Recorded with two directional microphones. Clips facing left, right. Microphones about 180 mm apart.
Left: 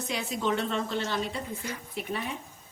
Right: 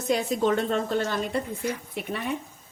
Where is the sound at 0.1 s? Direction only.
45° right (ahead or behind).